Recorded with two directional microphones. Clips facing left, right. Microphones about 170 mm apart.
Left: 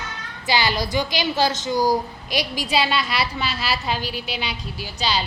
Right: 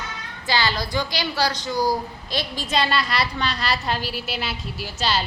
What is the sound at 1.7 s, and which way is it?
Speech, 45° left (ahead or behind).